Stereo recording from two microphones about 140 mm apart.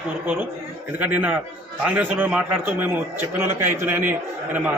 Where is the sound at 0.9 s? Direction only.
10° right (ahead or behind).